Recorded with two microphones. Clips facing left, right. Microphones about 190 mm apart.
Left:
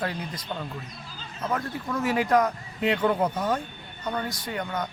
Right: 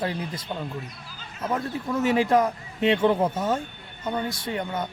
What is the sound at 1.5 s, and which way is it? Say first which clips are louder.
A man's voice: right 3 dB; 25° right (ahead or behind).